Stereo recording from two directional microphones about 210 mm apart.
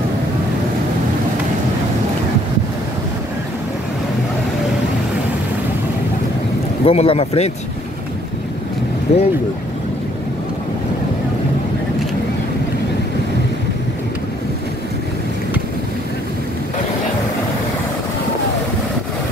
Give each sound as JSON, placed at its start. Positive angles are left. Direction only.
{"t": 6.8, "sound": "speech", "side_deg": 25}
{"t": 9.1, "sound": "speech", "side_deg": 30}